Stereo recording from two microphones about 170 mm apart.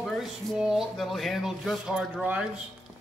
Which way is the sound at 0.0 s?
Centre (ahead or behind).